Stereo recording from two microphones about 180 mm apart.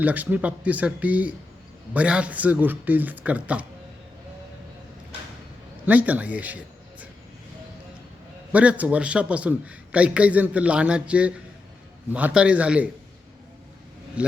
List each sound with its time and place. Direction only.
0.0 s a man's voice: 10° right (ahead or behind)
5.8 s a man's voice: 10° right (ahead or behind)
8.5 s a man's voice: 10° right (ahead or behind)
14.2 s a man's voice: 5° right (ahead or behind)